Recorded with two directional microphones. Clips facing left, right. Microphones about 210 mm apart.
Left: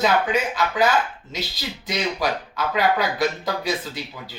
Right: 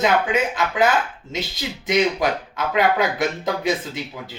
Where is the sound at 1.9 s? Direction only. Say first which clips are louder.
Right 5 dB; 20° right (ahead or behind).